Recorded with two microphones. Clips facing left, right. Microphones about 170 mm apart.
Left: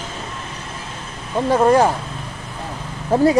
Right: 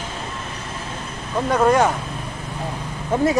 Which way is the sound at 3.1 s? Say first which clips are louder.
Left 4 dB; 30° left (ahead or behind).